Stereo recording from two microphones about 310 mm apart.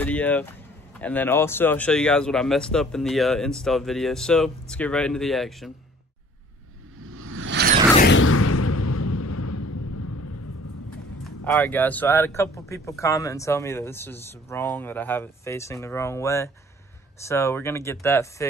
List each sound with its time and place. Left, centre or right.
0.0 s speech: centre
7.2 s whoosh: right
8.0 s a sound: left
11.2 s speech: centre